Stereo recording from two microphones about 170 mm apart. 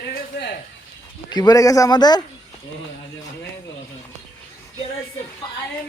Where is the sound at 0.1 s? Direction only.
75° left (ahead or behind).